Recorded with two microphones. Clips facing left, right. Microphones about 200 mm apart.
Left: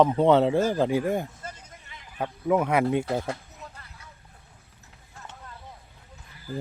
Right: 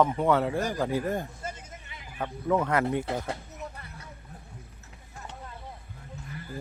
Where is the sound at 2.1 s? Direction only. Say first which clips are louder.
Left 3 dB; 15° left (ahead or behind).